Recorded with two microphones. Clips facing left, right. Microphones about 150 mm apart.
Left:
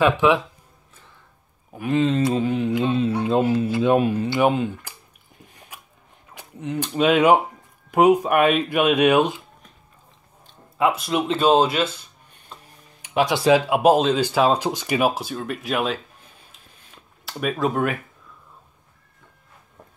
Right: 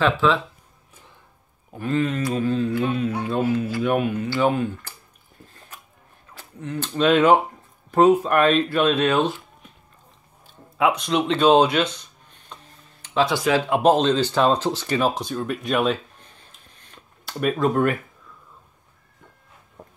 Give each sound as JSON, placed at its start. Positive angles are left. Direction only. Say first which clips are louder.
{"t": 0.0, "sound": "speech", "louder": "left 2 dB", "side_deg": 15}
{"t": 1.8, "sound": "speech", "louder": "left 3 dB", "side_deg": 20}
{"t": 4.3, "sound": "speech", "louder": "right 1 dB", "side_deg": 20}
{"t": 5.4, "sound": "biting", "louder": "even", "side_deg": 15}
{"t": 6.3, "sound": "a sound", "louder": "left 3 dB", "side_deg": 15}
{"t": 6.9, "sound": "speech", "louder": "even", "side_deg": 10}
{"t": 10.4, "sound": "a sound", "louder": "even", "side_deg": 0}
{"t": 13.7, "sound": "speech", "louder": "left 1 dB", "side_deg": 10}
{"t": 16.9, "sound": "a sound", "louder": "right 1 dB", "side_deg": 0}